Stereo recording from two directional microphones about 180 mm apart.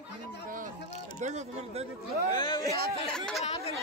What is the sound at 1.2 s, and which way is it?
Speech, 40° right (ahead or behind).